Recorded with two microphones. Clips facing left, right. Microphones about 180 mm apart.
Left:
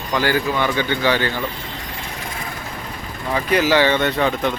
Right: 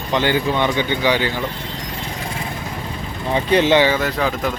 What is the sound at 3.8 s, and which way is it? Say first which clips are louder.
Speech: left 1 dB; 5° right (ahead or behind).